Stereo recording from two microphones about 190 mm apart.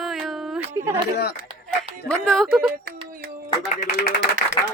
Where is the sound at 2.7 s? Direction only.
50° right (ahead or behind).